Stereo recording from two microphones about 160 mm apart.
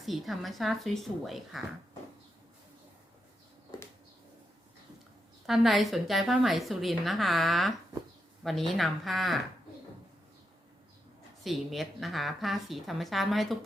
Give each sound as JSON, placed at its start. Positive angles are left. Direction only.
{"t": 0.0, "sound": "a woman's voice", "side_deg": 0}
{"t": 5.5, "sound": "a woman's voice", "side_deg": 0}
{"t": 11.4, "sound": "a woman's voice", "side_deg": 0}